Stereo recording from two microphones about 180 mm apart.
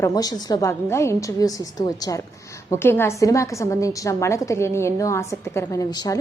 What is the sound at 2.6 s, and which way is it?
A woman's voice, 15° left (ahead or behind).